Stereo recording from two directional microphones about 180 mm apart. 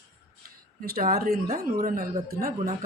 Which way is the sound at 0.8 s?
55° right (ahead or behind).